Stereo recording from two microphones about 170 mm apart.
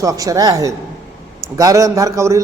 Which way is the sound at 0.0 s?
20° right (ahead or behind).